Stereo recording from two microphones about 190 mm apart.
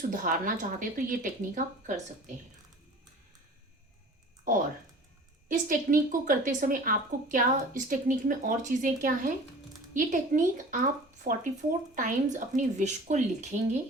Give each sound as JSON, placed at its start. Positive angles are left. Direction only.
{"t": 0.1, "sound": "a woman's voice", "side_deg": -45}
{"t": 5.5, "sound": "a woman's voice", "side_deg": -45}